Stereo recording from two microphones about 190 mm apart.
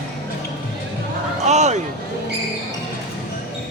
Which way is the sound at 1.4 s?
35° right (ahead or behind).